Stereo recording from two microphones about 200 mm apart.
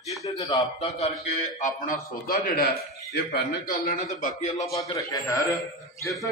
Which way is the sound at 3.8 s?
40° left (ahead or behind).